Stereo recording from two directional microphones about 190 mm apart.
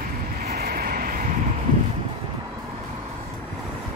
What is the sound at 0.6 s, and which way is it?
Vehicle, 55° right (ahead or behind).